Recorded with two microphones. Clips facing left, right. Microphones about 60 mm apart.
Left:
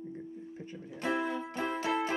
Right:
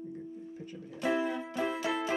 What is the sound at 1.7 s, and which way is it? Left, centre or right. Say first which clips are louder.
Music: left 1 dB; left.